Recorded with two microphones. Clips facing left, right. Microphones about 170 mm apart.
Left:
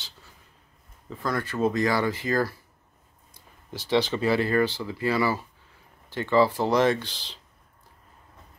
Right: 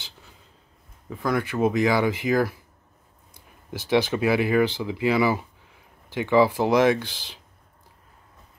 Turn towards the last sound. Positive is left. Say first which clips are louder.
# right 3 dB
turn(degrees=-10)  # may be behind; listen again after turning